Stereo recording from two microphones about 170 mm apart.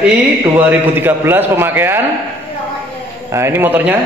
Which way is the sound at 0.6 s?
10° right (ahead or behind).